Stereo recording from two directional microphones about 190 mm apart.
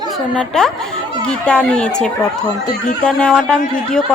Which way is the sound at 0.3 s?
5° left (ahead or behind).